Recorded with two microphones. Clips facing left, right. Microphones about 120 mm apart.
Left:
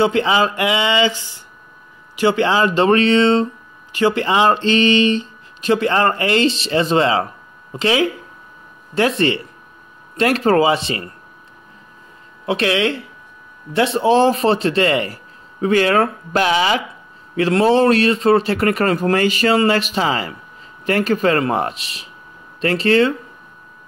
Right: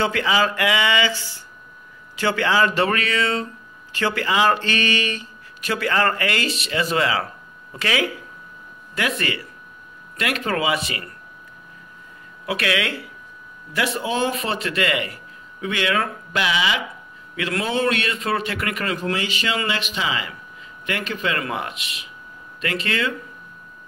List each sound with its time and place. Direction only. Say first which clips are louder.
0.0 s speech: left 5 dB; 25° left (ahead or behind)
12.4 s speech: left 6 dB; 30° left (ahead or behind)